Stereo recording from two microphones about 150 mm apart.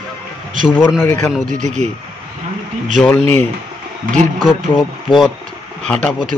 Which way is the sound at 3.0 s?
5° left (ahead or behind).